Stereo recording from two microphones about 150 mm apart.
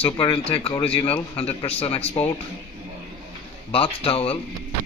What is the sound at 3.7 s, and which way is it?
Speech, 40° left (ahead or behind).